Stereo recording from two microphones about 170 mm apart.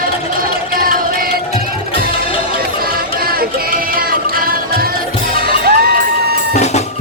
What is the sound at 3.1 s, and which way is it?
Music, 60° right (ahead or behind).